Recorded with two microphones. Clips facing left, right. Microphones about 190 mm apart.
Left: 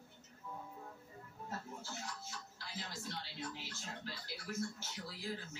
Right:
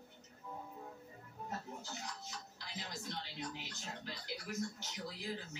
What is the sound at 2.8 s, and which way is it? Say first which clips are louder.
Speech: right 3 dB; 15° right (ahead or behind).